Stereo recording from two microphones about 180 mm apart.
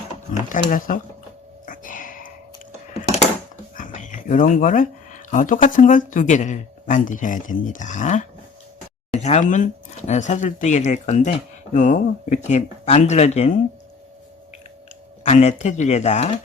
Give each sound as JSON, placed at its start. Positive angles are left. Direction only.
{"t": 0.3, "sound": "speech", "side_deg": 45}
{"t": 1.6, "sound": "cat", "side_deg": 50}
{"t": 2.9, "sound": "a sound", "side_deg": 35}
{"t": 3.8, "sound": "speech", "side_deg": 45}
{"t": 15.2, "sound": "speech", "side_deg": 40}